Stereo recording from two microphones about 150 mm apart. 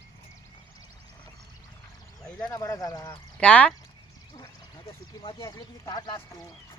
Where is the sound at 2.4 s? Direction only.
20° left (ahead or behind).